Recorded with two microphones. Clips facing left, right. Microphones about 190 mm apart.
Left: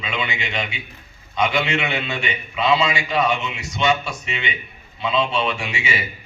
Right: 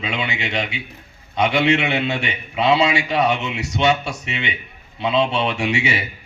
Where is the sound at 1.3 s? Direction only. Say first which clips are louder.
Right 4 dB; 65° right (ahead or behind).